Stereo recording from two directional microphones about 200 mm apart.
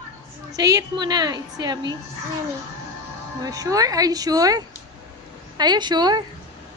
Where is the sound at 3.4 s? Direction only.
15° right (ahead or behind).